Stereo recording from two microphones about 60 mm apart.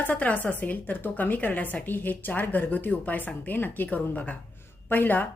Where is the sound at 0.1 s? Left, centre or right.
Left.